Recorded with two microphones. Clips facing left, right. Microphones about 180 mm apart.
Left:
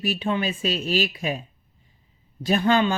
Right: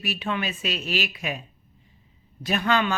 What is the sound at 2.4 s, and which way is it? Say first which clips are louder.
Speech: left 4 dB; 30° left (ahead or behind).